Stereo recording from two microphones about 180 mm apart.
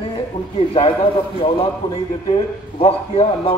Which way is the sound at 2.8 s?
30° left (ahead or behind).